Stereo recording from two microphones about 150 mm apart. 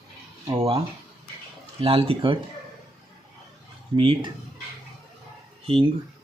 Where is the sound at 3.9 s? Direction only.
35° right (ahead or behind).